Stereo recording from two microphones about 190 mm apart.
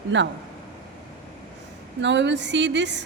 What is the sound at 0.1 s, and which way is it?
Speech, 70° right (ahead or behind).